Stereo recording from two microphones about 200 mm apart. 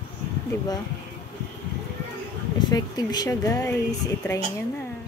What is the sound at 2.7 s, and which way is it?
A woman's voice, 20° left (ahead or behind).